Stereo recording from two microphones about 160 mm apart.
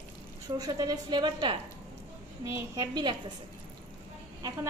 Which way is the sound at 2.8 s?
25° right (ahead or behind).